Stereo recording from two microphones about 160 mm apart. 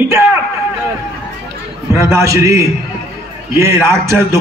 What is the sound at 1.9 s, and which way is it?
A man's voice, 20° right (ahead or behind).